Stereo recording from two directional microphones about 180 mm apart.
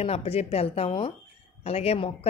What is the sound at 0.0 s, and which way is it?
Speech, 35° left (ahead or behind).